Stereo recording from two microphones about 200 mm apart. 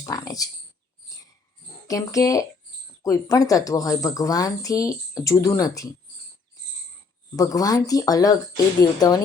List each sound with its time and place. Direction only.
0.0 s a woman's voice: 15° left (ahead or behind)
1.9 s a woman's voice: 15° left (ahead or behind)
7.3 s a woman's voice: 20° left (ahead or behind)